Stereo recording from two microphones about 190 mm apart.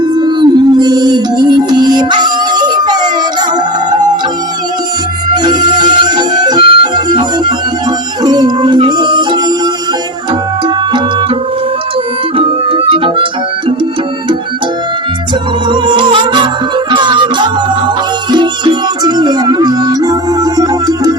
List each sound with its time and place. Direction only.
0.2 s music: 25° right (ahead or behind)
5.3 s music: 20° right (ahead or behind)
12.4 s music: 30° right (ahead or behind)
15.7 s music: 25° right (ahead or behind)